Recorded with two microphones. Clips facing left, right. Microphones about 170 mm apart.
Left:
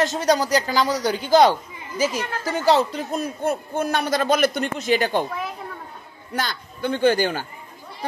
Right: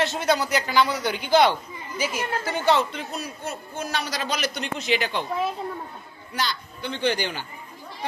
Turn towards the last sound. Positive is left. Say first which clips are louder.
# left 6 dB
turn(degrees=45)  # may be behind; listen again after turning